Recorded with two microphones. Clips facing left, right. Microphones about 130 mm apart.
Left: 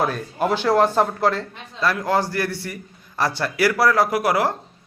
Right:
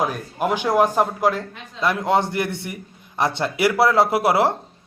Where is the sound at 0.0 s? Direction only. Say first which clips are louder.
Left 1 dB; 10° right (ahead or behind).